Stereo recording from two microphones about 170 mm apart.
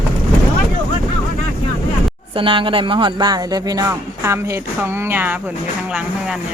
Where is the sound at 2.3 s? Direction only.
30° right (ahead or behind).